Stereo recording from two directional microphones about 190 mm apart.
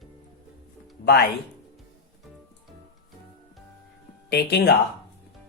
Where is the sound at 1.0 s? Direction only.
60° left (ahead or behind).